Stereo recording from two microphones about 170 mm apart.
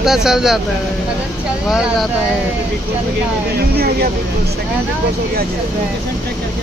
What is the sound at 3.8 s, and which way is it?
Speech, 65° right (ahead or behind).